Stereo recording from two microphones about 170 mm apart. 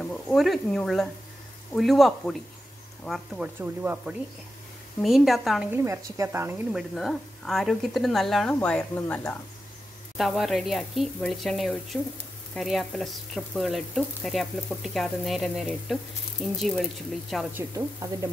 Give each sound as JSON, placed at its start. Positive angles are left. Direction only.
{"t": 0.0, "sound": "frying", "side_deg": 5}
{"t": 3.5, "sound": "speech", "side_deg": -10}
{"t": 5.0, "sound": "frying", "side_deg": 0}
{"t": 5.7, "sound": "speech", "side_deg": -15}
{"t": 6.7, "sound": "frying", "side_deg": 0}
{"t": 8.5, "sound": "speech", "side_deg": 10}
{"t": 10.1, "sound": "frying", "side_deg": 0}
{"t": 17.6, "sound": "speech", "side_deg": -15}